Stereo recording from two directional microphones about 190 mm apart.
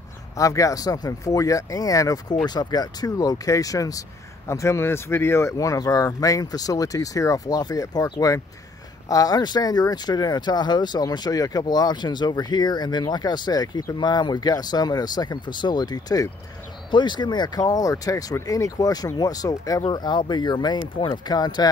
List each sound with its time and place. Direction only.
0.4 s speech: 15° left (ahead or behind)